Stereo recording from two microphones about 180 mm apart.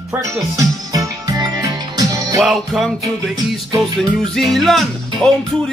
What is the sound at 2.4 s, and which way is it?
Music, centre (ahead or behind).